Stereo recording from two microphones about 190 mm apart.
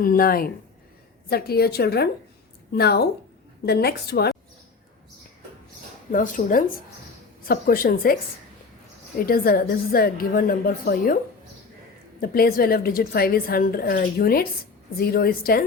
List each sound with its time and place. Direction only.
0.0 s a woman's voice: 50° left (ahead or behind)
6.1 s a woman's voice: 45° left (ahead or behind)
9.1 s a woman's voice: 50° left (ahead or behind)
12.2 s a woman's voice: 50° left (ahead or behind)